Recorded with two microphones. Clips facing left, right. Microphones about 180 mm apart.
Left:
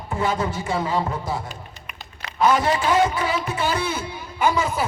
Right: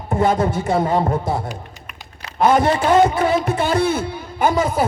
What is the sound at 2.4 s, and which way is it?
A man's voice, 55° right (ahead or behind).